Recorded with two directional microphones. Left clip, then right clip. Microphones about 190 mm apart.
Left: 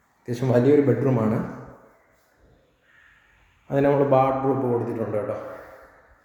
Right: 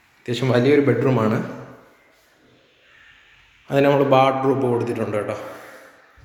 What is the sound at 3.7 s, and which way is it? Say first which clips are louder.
A man's voice: right 3 dB; centre (ahead or behind).